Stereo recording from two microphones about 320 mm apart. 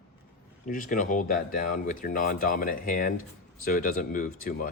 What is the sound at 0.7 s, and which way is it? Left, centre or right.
Speech, left.